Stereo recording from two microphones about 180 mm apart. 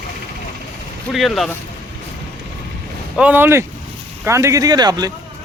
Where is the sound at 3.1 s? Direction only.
10° right (ahead or behind).